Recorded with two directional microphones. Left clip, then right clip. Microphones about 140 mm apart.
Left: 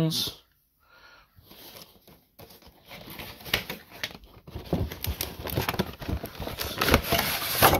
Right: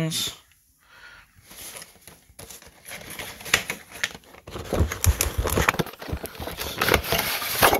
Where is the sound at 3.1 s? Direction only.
45° left (ahead or behind).